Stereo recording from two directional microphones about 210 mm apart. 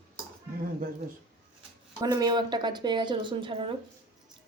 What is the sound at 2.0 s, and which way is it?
A woman's voice, 20° right (ahead or behind).